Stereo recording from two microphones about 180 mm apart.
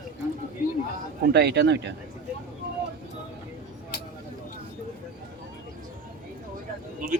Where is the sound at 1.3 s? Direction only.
65° right (ahead or behind).